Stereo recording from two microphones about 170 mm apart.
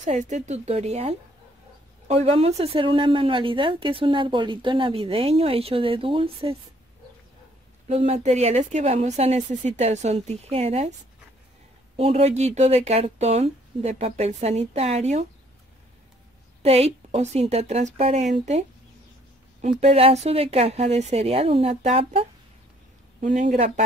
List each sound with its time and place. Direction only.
0.0 s speech: 45° right (ahead or behind)
7.9 s speech: 40° right (ahead or behind)
12.0 s speech: 40° right (ahead or behind)
16.6 s speech: 40° right (ahead or behind)
19.8 s speech: 35° right (ahead or behind)
23.2 s speech: 45° right (ahead or behind)